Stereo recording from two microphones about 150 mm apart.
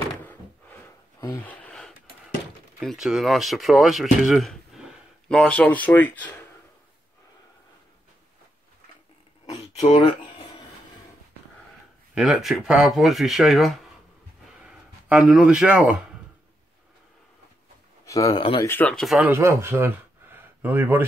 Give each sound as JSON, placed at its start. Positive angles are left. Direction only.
{"t": 0.2, "sound": "a sound", "side_deg": 10}
{"t": 2.8, "sound": "speech", "side_deg": 0}
{"t": 5.4, "sound": "speech", "side_deg": 10}
{"t": 9.8, "sound": "speech", "side_deg": 50}
{"t": 12.2, "sound": "a man's voice", "side_deg": -5}
{"t": 18.0, "sound": "speech", "side_deg": 25}
{"t": 19.2, "sound": "speech", "side_deg": -15}